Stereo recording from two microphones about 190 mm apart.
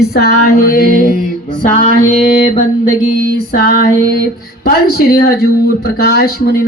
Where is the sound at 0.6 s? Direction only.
50° left (ahead or behind).